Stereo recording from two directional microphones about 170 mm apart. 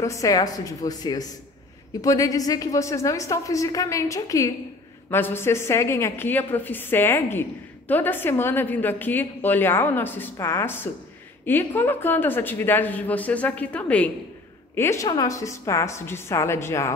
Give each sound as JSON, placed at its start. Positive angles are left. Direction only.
{"t": 0.0, "sound": "a woman's voice", "side_deg": 20}